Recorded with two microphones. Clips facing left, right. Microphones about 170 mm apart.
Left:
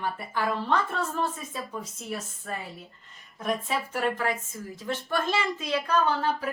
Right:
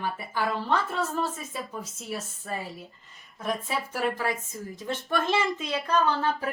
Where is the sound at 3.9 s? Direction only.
10° right (ahead or behind).